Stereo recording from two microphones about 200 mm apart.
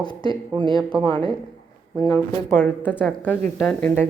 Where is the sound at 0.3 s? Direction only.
25° right (ahead or behind).